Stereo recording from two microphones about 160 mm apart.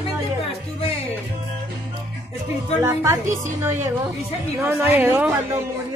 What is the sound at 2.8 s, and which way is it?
Speech, 15° right (ahead or behind).